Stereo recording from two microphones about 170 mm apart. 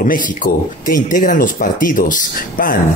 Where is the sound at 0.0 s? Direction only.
50° left (ahead or behind).